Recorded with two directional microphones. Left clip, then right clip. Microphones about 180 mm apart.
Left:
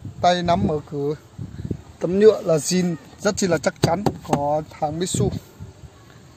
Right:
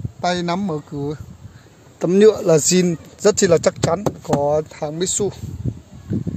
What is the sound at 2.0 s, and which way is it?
A man's voice, 35° right (ahead or behind).